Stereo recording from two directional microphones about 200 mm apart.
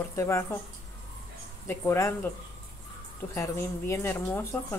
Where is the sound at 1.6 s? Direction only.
15° left (ahead or behind).